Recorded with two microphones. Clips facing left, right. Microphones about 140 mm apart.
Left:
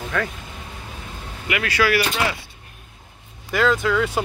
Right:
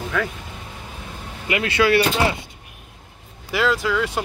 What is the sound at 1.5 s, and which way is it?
Speech, 25° right (ahead or behind).